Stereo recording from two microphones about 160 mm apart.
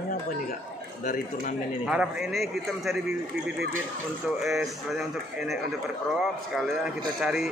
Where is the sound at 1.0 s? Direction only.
55° left (ahead or behind).